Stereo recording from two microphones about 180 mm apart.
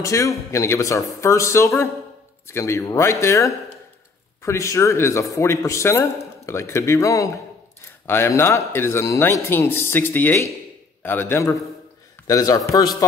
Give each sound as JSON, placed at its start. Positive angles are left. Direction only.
{"t": 0.0, "sound": "a man's voice", "side_deg": 15}